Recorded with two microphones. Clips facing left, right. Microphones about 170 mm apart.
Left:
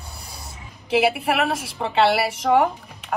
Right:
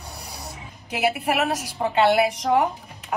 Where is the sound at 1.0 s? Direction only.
Centre (ahead or behind).